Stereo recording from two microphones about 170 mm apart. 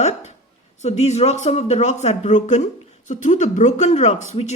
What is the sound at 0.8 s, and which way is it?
A woman's voice, 40° left (ahead or behind).